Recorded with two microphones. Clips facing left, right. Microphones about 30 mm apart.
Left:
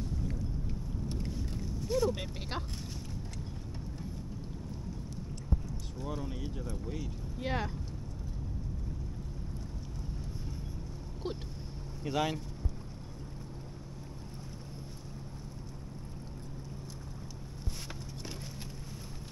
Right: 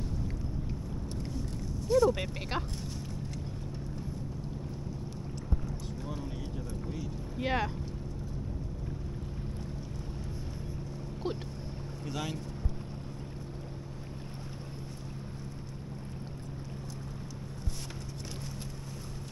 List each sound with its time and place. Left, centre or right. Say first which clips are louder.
1.9 s vehicle: right 6 dB; centre
2.5 s speech: right 4 dB; centre
6.0 s speech: left 3 dB; centre
7.4 s speech: right 4 dB; centre
11.2 s boat: right 3 dB; centre
12.0 s speech: left 6 dB; centre